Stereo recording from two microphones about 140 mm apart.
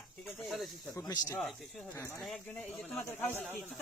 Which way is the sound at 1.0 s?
25° left (ahead or behind).